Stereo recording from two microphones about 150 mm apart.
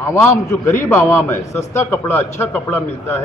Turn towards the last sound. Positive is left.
turn(degrees=15)  # may be behind; listen again after turning